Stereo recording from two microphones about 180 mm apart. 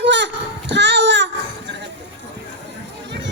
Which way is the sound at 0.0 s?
80° right.